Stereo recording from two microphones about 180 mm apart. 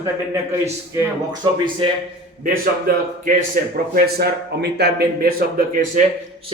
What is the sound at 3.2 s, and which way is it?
A man's voice, 50° right (ahead or behind).